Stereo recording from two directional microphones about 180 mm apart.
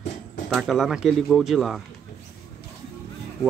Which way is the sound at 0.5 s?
Centre (ahead or behind).